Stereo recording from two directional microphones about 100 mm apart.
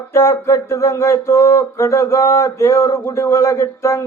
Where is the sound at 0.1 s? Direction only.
30° left (ahead or behind).